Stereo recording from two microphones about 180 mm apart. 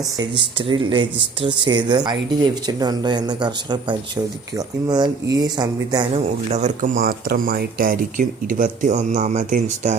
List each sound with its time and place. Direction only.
0.5 s speech: 30° right (ahead or behind)
6.1 s speech: 40° right (ahead or behind)